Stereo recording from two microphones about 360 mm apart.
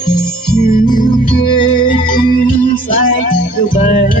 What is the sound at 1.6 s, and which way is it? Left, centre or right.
Music, left.